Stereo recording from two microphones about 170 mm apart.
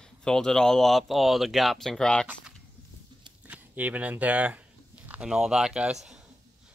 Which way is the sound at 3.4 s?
10° right (ahead or behind).